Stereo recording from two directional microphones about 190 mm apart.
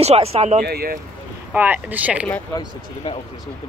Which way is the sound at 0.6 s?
55° right (ahead or behind).